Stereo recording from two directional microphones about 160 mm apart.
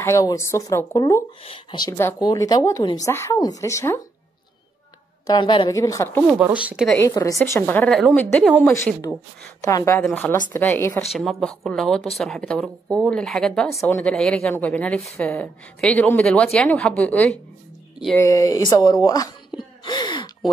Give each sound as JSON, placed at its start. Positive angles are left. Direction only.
{"t": 0.0, "sound": "a woman's voice", "side_deg": 20}
{"t": 1.4, "sound": "a woman's voice", "side_deg": 30}
{"t": 2.0, "sound": "a woman's voice", "side_deg": 15}
{"t": 5.2, "sound": "a woman's voice", "side_deg": 25}
{"t": 6.3, "sound": "speech", "side_deg": -10}
{"t": 7.1, "sound": "a woman's voice", "side_deg": 20}
{"t": 11.1, "sound": "a woman's voice", "side_deg": 0}
{"t": 18.1, "sound": "speech", "side_deg": 20}